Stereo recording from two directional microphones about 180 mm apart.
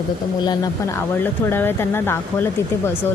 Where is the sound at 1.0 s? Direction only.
10° left (ahead or behind).